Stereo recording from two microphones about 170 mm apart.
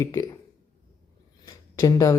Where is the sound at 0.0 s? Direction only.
20° left (ahead or behind).